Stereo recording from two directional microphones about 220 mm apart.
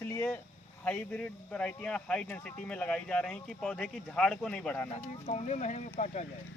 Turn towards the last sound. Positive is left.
turn(degrees=30)  # may be behind; listen again after turning